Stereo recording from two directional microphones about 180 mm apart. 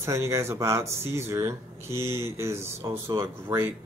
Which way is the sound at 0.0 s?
15° right (ahead or behind).